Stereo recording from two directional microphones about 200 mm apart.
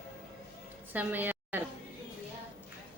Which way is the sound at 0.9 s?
10° right (ahead or behind).